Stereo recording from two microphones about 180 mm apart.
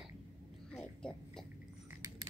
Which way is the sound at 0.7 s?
5° left (ahead or behind).